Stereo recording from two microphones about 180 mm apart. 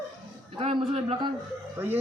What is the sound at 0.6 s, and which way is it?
Speech, 30° right (ahead or behind).